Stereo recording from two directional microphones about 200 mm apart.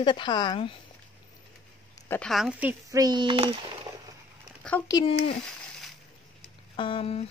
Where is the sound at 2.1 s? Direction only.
5° left (ahead or behind).